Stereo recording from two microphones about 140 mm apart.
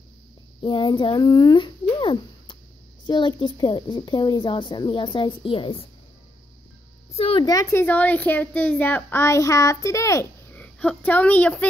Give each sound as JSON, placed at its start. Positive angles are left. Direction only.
{"t": 0.6, "sound": "a woman's voice", "side_deg": 35}
{"t": 7.2, "sound": "a woman's voice", "side_deg": 45}
{"t": 7.4, "sound": "a woman's voice", "side_deg": 25}
{"t": 7.8, "sound": "speech", "side_deg": 10}
{"t": 10.6, "sound": "speech", "side_deg": 10}